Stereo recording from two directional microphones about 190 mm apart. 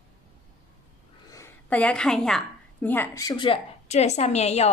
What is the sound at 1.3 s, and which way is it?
A woman's voice, 10° left (ahead or behind).